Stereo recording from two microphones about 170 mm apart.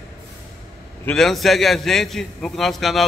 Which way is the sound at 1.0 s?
Centre (ahead or behind).